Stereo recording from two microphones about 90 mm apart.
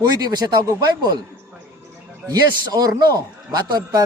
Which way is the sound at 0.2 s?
45° right (ahead or behind).